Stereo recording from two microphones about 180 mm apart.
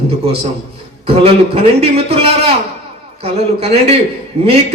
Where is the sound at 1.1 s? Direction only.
35° right (ahead or behind).